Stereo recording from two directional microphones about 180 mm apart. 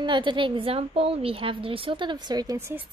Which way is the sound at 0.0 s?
25° right (ahead or behind).